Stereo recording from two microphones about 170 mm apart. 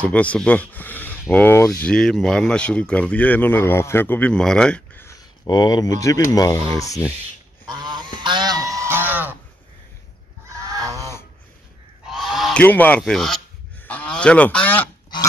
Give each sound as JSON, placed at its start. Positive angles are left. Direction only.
{"t": 0.0, "sound": "speech", "side_deg": 10}
{"t": 7.6, "sound": "goose", "side_deg": -25}
{"t": 10.4, "sound": "goose", "side_deg": -20}
{"t": 11.0, "sound": "a sound", "side_deg": 15}
{"t": 12.1, "sound": "goose", "side_deg": 0}
{"t": 12.6, "sound": "speech", "side_deg": 10}
{"t": 13.8, "sound": "goose", "side_deg": 10}